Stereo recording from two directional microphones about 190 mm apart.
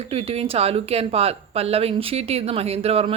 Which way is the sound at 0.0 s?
30° right (ahead or behind).